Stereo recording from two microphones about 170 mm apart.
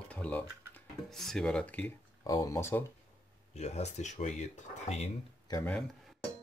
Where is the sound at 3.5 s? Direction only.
40° left (ahead or behind).